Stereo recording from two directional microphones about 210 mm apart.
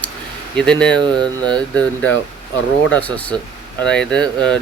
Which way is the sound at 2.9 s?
5° left (ahead or behind).